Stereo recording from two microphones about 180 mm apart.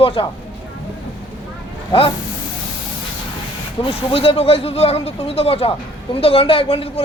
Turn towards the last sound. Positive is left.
turn(degrees=30)  # may be behind; listen again after turning